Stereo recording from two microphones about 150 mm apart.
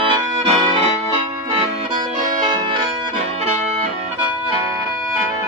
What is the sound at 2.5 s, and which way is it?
Music, 35° right (ahead or behind).